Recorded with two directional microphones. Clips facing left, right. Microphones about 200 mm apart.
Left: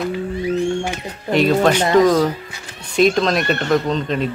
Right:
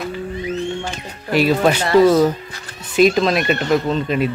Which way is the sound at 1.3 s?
5° right (ahead or behind).